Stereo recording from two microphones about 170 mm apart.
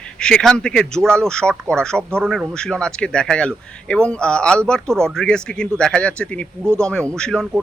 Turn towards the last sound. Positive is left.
turn(degrees=5)  # may be behind; listen again after turning